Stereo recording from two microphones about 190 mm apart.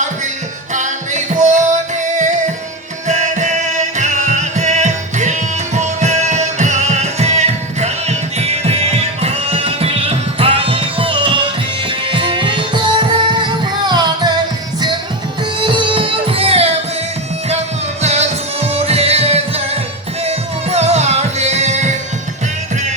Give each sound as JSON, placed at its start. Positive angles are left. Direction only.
{"t": 0.7, "sound": "music", "side_deg": -40}
{"t": 15.6, "sound": "music", "side_deg": -25}
{"t": 18.0, "sound": "music", "side_deg": -35}